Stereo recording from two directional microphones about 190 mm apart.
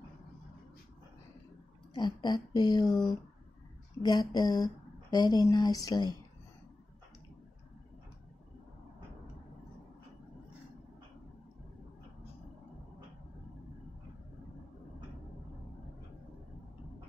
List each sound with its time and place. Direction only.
2.0 s speech: 25° left (ahead or behind)